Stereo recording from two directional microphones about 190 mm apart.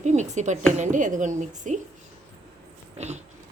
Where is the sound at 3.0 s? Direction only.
35° right (ahead or behind).